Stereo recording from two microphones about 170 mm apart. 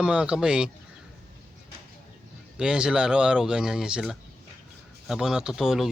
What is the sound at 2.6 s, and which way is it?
Speech, 5° right (ahead or behind).